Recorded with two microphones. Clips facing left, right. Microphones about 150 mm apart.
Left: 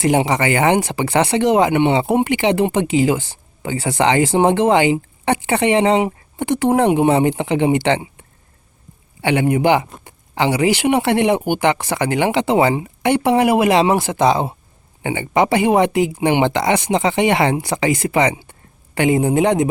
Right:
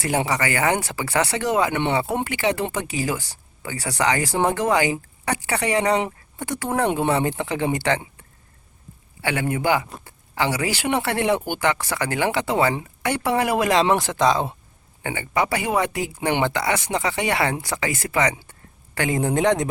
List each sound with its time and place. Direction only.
0.0 s speech: 20° left (ahead or behind)
9.2 s speech: 20° left (ahead or behind)